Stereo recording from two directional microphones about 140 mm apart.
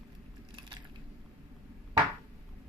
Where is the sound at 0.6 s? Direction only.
35° right (ahead or behind).